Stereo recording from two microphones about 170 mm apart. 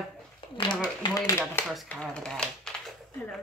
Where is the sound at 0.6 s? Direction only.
25° left (ahead or behind).